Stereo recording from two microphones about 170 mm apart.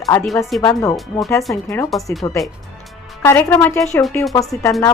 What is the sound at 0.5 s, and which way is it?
Speech, centre (ahead or behind).